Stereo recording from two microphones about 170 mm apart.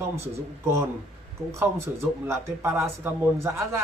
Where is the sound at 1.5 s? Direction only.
15° right (ahead or behind).